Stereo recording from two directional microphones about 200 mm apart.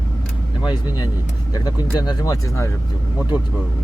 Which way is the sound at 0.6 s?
20° left (ahead or behind).